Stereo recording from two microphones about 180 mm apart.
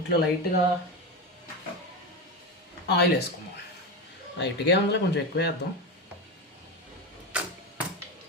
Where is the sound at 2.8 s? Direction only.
65° left (ahead or behind).